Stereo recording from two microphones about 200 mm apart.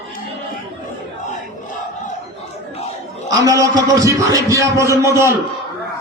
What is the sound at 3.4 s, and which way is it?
A man's voice, 15° right (ahead or behind).